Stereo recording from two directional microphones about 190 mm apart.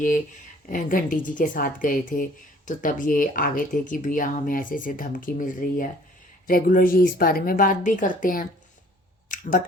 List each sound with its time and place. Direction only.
0.7 s speech: 45° left (ahead or behind)